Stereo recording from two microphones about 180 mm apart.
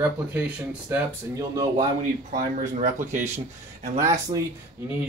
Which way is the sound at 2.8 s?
45° right (ahead or behind).